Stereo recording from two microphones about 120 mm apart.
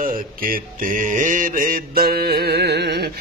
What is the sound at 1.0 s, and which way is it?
Mantra, 90° right.